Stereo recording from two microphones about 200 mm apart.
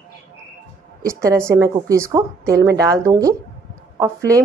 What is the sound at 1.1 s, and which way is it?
A woman's voice, 15° right (ahead or behind).